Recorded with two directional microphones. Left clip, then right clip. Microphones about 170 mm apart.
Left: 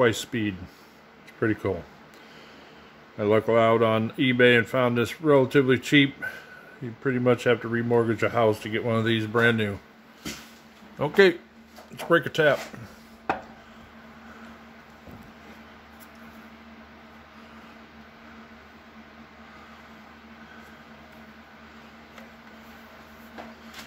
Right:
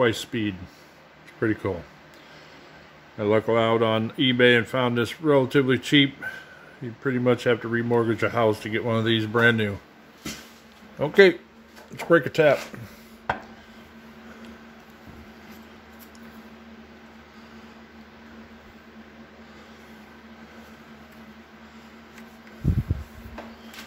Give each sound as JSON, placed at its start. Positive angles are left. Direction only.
{"t": 0.0, "sound": "speech", "side_deg": 5}
{"t": 3.2, "sound": "speech", "side_deg": 0}
{"t": 11.0, "sound": "speech", "side_deg": -10}